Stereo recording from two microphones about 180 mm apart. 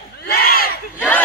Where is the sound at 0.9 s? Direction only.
10° left (ahead or behind).